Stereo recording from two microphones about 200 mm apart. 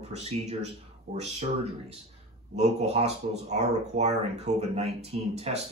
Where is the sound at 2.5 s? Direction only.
30° right (ahead or behind).